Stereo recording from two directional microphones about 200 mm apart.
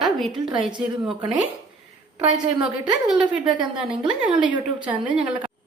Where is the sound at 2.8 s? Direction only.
5° right (ahead or behind).